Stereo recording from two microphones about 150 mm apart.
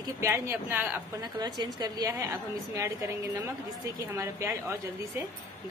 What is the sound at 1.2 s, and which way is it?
A woman's voice, 30° right (ahead or behind).